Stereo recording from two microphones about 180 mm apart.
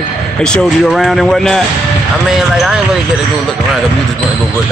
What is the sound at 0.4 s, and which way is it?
Speech, centre (ahead or behind).